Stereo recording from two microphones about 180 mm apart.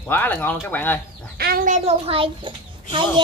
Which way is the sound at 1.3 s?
55° right (ahead or behind).